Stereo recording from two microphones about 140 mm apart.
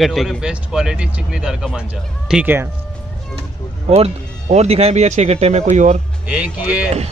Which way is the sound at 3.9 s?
50° right (ahead or behind).